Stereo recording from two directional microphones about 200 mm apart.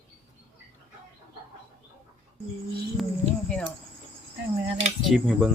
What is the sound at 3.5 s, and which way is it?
Cricket, 5° left (ahead or behind).